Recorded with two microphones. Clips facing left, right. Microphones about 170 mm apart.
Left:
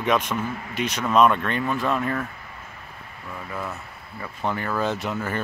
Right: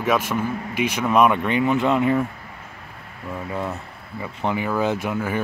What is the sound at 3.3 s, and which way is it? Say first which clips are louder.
Speech: right 5 dB; 25° right (ahead or behind).